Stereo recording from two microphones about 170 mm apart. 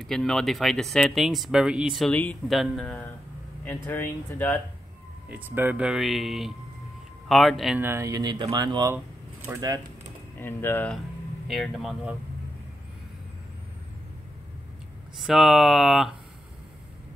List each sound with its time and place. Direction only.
0.0 s speech: centre (ahead or behind)
3.6 s speech: 10° left (ahead or behind)
5.3 s speech: 10° right (ahead or behind)
7.8 s speech: 15° right (ahead or behind)
10.4 s speech: 10° left (ahead or behind)
11.4 s speech: centre (ahead or behind)
15.1 s speech: centre (ahead or behind)